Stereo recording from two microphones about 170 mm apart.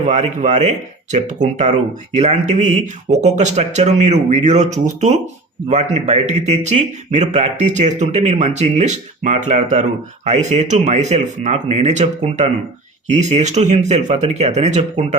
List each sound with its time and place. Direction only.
0.0 s speech: 45° right (ahead or behind)